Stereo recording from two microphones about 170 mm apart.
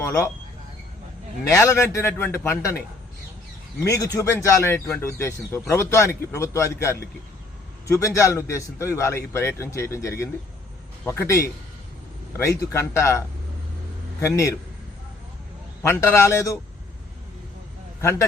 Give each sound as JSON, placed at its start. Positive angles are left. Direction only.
{"t": 1.5, "sound": "speech", "side_deg": 15}
{"t": 3.8, "sound": "speech", "side_deg": 20}
{"t": 15.8, "sound": "speech", "side_deg": 15}
{"t": 18.0, "sound": "speech", "side_deg": 15}